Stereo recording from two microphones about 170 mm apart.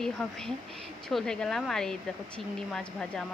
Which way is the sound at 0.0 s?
5° left (ahead or behind).